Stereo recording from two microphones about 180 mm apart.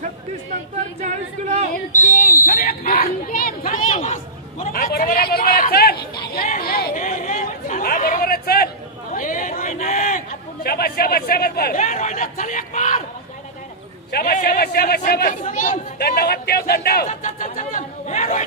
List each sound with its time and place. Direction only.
1.0 s speech: 40° right (ahead or behind)
1.9 s a man's voice: 45° left (ahead or behind)
3.9 s a sound: 40° left (ahead or behind)
4.7 s chatter: 55° left (ahead or behind)
9.1 s a sound: 50° left (ahead or behind)
14.1 s a man's voice: 50° left (ahead or behind)